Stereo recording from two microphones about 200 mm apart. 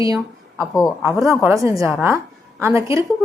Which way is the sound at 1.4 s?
15° right (ahead or behind).